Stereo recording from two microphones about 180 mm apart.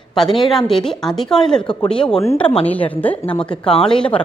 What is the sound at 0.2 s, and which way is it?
A woman's voice, centre (ahead or behind).